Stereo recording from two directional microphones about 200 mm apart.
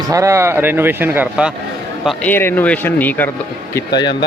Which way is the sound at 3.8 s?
20° left (ahead or behind).